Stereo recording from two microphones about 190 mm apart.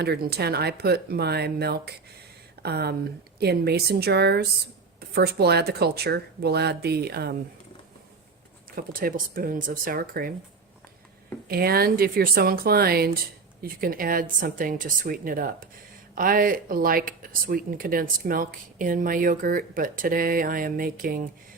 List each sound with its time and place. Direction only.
0.0 s speech: 55° right (ahead or behind)
8.7 s speech: 50° right (ahead or behind)
11.4 s speech: 55° right (ahead or behind)